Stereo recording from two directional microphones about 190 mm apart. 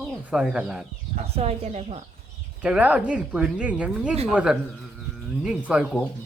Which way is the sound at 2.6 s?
5° right (ahead or behind).